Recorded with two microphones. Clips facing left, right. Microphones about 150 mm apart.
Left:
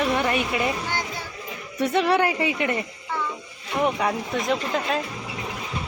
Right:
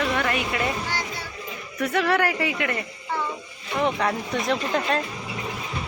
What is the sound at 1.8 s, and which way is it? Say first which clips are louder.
Speech: left 2 dB; 20° left (ahead or behind).